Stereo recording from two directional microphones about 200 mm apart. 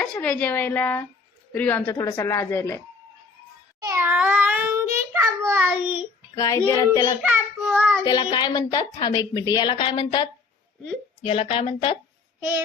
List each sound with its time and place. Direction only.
0.0 s speech: 5° left (ahead or behind)
3.8 s child singing: 10° right (ahead or behind)
6.3 s speech: 15° left (ahead or behind)
7.2 s child singing: 5° right (ahead or behind)
8.0 s a woman's voice: 20° left (ahead or behind)
12.4 s child singing: 10° right (ahead or behind)